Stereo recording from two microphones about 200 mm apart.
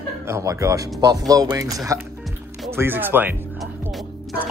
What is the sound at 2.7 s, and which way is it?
Music, 10° right (ahead or behind).